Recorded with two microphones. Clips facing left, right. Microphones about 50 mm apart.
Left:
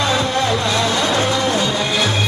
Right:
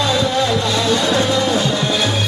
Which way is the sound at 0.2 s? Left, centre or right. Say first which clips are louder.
Right 1 dB; left.